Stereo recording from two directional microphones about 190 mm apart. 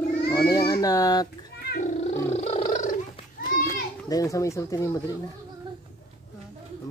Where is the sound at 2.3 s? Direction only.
35° left (ahead or behind).